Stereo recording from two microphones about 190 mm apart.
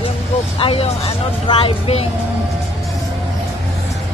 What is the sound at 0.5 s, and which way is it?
Speech, 30° left (ahead or behind).